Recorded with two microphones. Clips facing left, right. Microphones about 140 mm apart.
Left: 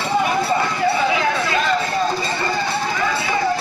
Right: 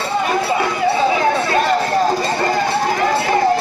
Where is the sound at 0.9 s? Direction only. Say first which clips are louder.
Right 3 dB; 35° right (ahead or behind).